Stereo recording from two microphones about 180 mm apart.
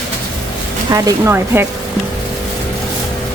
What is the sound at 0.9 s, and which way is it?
Speech, 15° right (ahead or behind).